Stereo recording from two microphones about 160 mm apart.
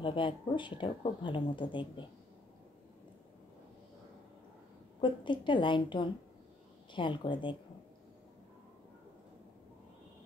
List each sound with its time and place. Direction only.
0.0 s speech: 30° left (ahead or behind)
5.0 s a woman's voice: 30° left (ahead or behind)